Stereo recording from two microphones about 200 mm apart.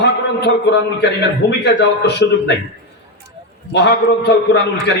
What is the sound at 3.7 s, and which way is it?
Speech, 60° left (ahead or behind).